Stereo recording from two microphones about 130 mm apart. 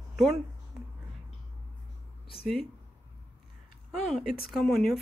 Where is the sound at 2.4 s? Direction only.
Centre (ahead or behind).